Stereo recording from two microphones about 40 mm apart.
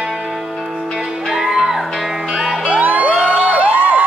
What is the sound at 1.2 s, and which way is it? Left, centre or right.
Music, centre.